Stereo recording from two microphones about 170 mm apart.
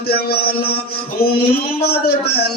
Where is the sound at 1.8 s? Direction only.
70° left (ahead or behind).